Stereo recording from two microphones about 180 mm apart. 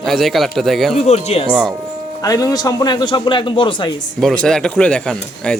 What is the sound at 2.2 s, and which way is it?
A man's voice, 20° left (ahead or behind).